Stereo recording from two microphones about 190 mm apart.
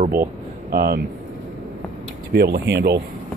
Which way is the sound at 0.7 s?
50° right (ahead or behind).